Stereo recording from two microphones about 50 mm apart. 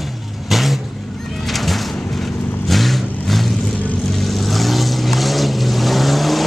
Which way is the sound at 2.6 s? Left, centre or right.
Centre.